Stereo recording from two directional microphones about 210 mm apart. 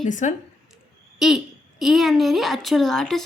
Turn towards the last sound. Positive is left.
turn(degrees=0)  # may be behind; listen again after turning